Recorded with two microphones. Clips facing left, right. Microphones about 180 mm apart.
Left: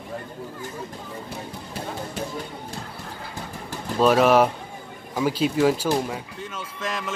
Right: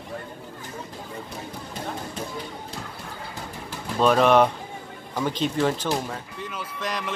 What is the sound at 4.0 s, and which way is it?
Speech, 5° left (ahead or behind).